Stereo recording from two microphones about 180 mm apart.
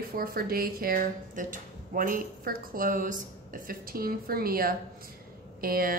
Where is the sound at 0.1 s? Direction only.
55° right (ahead or behind).